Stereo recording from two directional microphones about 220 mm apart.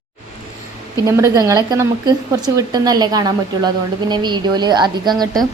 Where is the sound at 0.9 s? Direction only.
15° right (ahead or behind).